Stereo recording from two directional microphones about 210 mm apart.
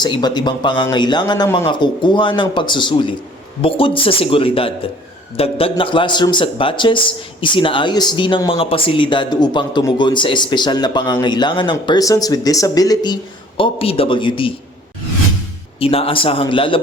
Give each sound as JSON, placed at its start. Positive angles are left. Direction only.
{"t": 0.0, "sound": "speech", "side_deg": 20}
{"t": 15.8, "sound": "speech", "side_deg": 25}